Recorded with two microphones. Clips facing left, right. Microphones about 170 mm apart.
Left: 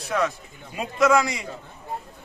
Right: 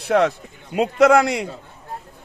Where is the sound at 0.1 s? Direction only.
65° right (ahead or behind).